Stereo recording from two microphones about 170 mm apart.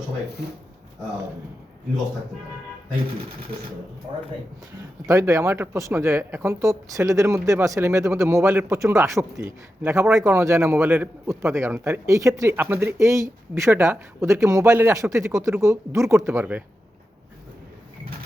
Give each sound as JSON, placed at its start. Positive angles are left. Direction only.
{"t": 5.0, "sound": "speech", "side_deg": -20}